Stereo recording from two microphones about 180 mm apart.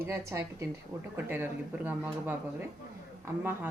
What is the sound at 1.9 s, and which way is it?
Speech, 10° right (ahead or behind).